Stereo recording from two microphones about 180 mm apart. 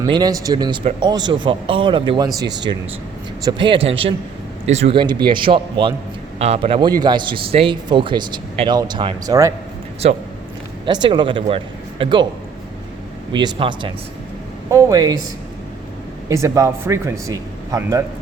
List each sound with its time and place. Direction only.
0.0 s speech: 20° right (ahead or behind)
10.8 s speech: 25° right (ahead or behind)
13.3 s speech: 25° right (ahead or behind)
16.3 s a man's voice: 15° right (ahead or behind)